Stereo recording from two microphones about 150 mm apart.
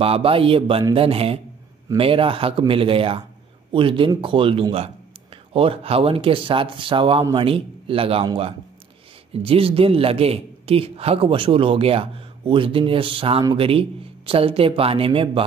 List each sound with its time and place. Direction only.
0.0 s speech: 40° right (ahead or behind)